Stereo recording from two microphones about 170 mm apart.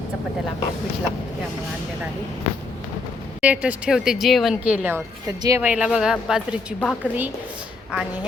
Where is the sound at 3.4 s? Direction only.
10° right (ahead or behind).